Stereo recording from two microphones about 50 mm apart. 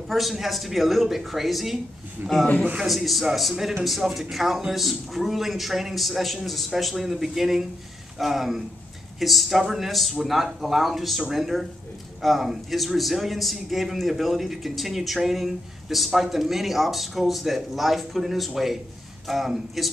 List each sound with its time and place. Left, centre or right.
0.1 s a man's voice: centre
2.2 s a man's voice: right
2.9 s a man's voice: centre